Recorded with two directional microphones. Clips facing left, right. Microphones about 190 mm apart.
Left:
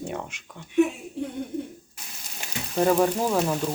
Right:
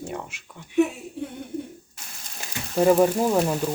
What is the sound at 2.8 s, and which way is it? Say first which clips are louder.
Speech: right 3 dB; 10° right (ahead or behind).